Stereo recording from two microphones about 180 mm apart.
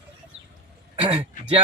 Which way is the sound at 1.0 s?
30° right (ahead or behind).